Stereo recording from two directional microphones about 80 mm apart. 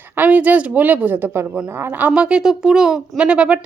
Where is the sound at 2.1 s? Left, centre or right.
Centre.